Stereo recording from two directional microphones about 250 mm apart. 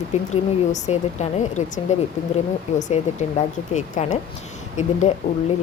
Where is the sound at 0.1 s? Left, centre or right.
Left.